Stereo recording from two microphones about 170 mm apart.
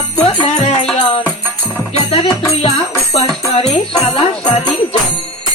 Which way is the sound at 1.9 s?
35° left (ahead or behind).